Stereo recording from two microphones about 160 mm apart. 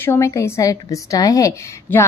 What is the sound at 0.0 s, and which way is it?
A woman's voice, 15° left (ahead or behind).